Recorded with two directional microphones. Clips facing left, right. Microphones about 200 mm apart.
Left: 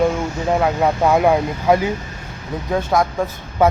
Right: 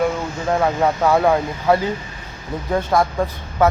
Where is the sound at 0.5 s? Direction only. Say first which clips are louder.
Even; 5° left (ahead or behind).